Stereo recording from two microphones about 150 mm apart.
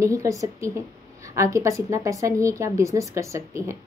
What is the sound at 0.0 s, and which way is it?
A woman's voice, 20° right (ahead or behind).